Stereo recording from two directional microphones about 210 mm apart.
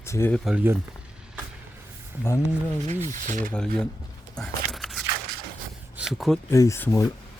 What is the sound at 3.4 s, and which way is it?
Speech, 5° left (ahead or behind).